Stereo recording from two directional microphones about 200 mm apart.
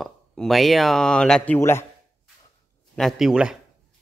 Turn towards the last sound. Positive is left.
turn(degrees=-5)  # may be behind; listen again after turning